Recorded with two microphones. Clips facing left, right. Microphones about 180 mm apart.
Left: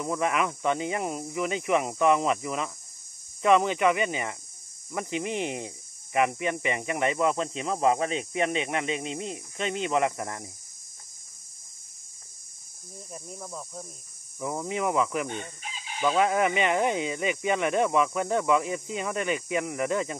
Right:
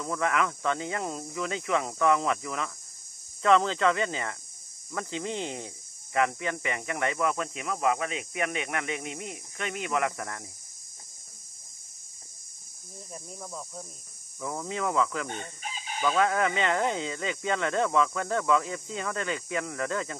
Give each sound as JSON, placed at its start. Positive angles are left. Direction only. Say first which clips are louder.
{"t": 0.0, "sound": "speech", "louder": "left 1 dB", "side_deg": 20}
{"t": 13.1, "sound": "speech", "louder": "left 1 dB", "side_deg": 5}
{"t": 14.4, "sound": "speech", "louder": "left 3 dB", "side_deg": 20}